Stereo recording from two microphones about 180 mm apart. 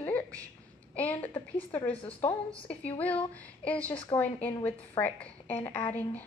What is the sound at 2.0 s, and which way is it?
Speech, 30° left (ahead or behind).